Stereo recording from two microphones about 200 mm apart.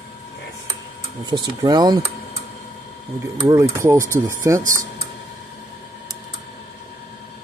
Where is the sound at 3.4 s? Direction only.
15° right (ahead or behind).